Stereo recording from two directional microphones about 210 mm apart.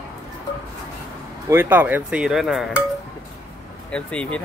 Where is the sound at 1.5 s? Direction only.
10° right (ahead or behind).